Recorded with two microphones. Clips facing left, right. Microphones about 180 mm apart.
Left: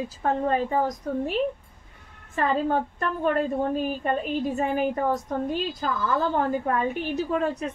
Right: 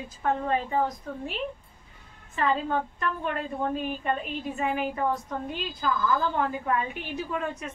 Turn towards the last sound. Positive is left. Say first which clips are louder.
# left 6 dB
turn(degrees=40)  # may be behind; listen again after turning